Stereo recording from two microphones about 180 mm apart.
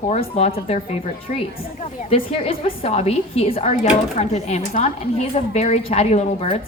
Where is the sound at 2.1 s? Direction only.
30° left (ahead or behind).